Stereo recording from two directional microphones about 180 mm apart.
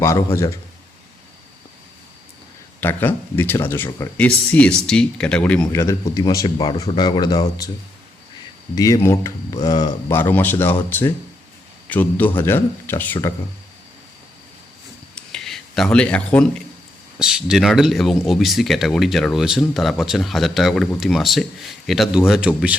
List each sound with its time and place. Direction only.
0.3 s speech: 15° left (ahead or behind)
2.8 s speech: 10° left (ahead or behind)
4.5 s speech: 5° left (ahead or behind)
8.7 s speech: 20° left (ahead or behind)
15.1 s a sound: 5° left (ahead or behind)
17.2 s speech: 5° right (ahead or behind)